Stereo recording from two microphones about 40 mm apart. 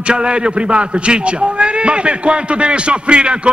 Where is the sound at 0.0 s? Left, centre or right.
Right.